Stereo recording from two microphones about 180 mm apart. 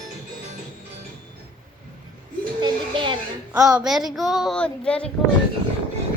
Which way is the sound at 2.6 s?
25° right (ahead or behind).